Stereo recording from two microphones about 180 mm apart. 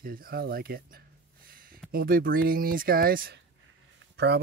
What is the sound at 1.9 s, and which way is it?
Speech, 55° right (ahead or behind).